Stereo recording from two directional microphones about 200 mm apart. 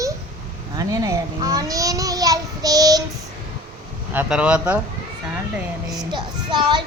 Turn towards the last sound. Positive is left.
turn(degrees=-20)  # may be behind; listen again after turning